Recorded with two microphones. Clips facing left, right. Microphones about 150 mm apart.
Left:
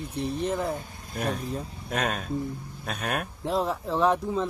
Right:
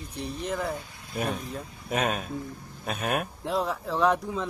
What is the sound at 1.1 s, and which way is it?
Speech, centre (ahead or behind).